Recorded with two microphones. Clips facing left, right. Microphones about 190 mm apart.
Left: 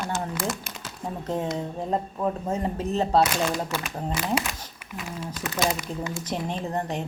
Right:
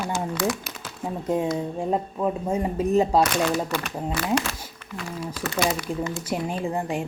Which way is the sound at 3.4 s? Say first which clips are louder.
Right 3 dB; 10° left (ahead or behind).